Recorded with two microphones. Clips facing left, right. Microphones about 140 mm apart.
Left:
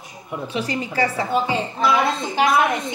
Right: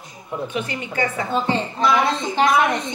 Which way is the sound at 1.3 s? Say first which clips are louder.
Even; 5° left (ahead or behind).